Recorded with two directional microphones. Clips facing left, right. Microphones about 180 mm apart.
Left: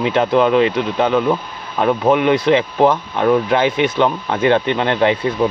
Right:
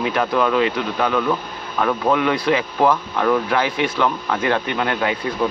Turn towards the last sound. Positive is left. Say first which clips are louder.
# left 6 dB
turn(degrees=25)  # may be behind; listen again after turning